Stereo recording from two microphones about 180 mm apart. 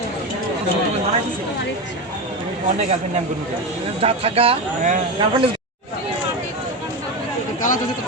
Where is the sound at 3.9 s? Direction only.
35° right (ahead or behind).